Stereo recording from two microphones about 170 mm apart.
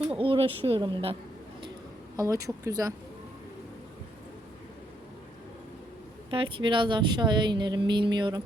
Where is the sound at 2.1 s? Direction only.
20° right (ahead or behind).